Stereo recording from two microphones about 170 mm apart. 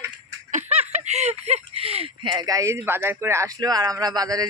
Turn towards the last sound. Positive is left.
turn(degrees=-20)  # may be behind; listen again after turning